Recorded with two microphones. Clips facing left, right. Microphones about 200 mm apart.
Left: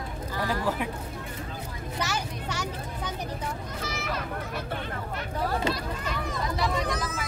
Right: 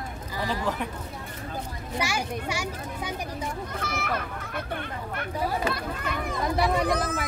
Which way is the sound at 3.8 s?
55° right (ahead or behind).